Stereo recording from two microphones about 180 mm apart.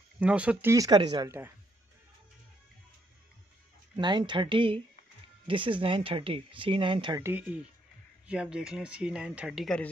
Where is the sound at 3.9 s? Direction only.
25° right (ahead or behind).